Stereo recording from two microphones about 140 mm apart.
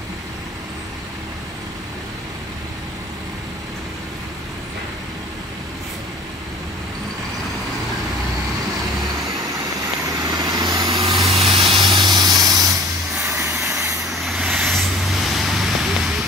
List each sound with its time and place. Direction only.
10.3 s vehicle: 30° right (ahead or behind)
11.2 s spray: 45° right (ahead or behind); by 12.7 s 25° right (ahead or behind)
13.2 s vehicle: 15° right (ahead or behind)
14.2 s vehicle: 5° right (ahead or behind)